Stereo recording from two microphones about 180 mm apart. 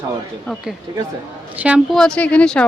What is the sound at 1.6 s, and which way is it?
Speech, centre (ahead or behind).